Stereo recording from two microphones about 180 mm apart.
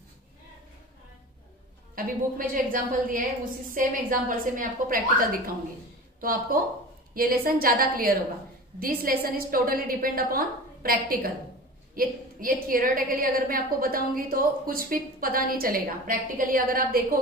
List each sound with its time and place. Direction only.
2.0 s a woman's voice: 50° right (ahead or behind)
6.2 s a woman's voice: 55° right (ahead or behind)